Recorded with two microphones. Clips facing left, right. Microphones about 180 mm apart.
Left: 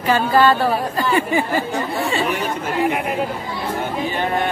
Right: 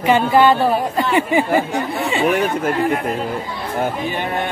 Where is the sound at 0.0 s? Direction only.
20° right (ahead or behind).